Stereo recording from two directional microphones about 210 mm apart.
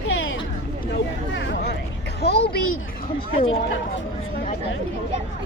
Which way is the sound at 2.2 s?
50° left (ahead or behind).